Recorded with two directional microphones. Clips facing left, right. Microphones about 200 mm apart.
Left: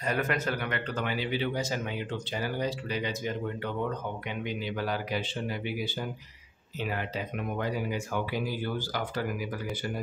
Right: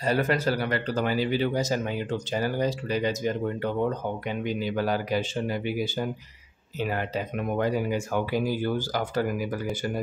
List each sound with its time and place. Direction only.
0.0 s speech: 30° right (ahead or behind)